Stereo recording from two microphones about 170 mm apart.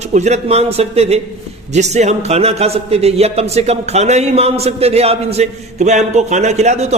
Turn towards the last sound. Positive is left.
turn(degrees=-40)  # may be behind; listen again after turning